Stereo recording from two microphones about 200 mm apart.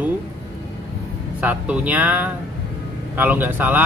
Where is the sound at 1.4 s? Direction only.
10° right (ahead or behind).